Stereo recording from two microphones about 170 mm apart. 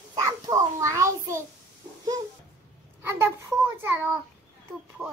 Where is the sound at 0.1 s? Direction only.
20° right (ahead or behind).